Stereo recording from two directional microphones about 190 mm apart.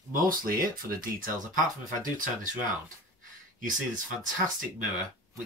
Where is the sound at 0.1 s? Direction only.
50° right (ahead or behind).